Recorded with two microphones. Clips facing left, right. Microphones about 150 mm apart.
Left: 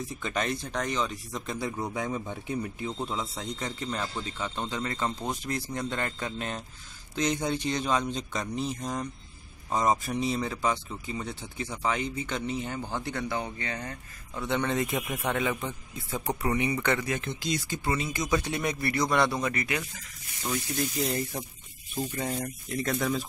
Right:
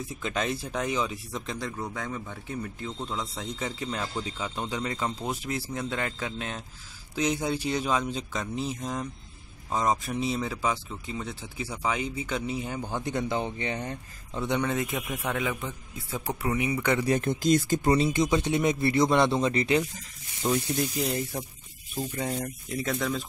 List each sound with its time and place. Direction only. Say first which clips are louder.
0.0 s speech: right 1 dB; centre (ahead or behind)
1.6 s speech: left 2 dB; 15° left (ahead or behind)
3.3 s speech: right 1 dB; centre (ahead or behind); by 14.6 s 20° right (ahead or behind)
14.6 s speech: even; 5° right (ahead or behind)
17.0 s speech: right 6 dB; 35° right (ahead or behind)
17.3 s speech: right 8 dB; 50° right (ahead or behind); by 20.8 s 20° right (ahead or behind)
21.0 s speech: right 1 dB; centre (ahead or behind)